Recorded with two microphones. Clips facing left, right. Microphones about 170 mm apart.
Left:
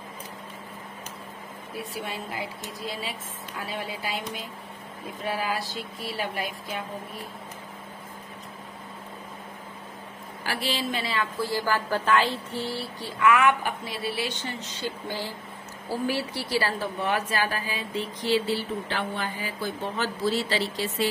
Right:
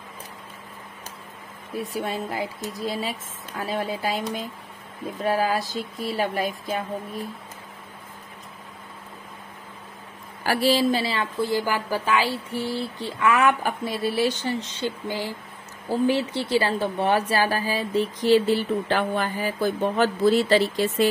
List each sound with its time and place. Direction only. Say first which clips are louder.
2.0 s speech: right 6 dB; 40° right (ahead or behind)
5.2 s speech: right 6 dB; 40° right (ahead or behind)
10.4 s a woman's voice: right 9 dB; 40° right (ahead or behind)
15.0 s speech: right 4 dB; 15° right (ahead or behind); by 21.1 s 50° right (ahead or behind)